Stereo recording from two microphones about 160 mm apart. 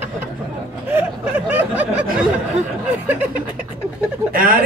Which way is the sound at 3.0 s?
10° right (ahead or behind).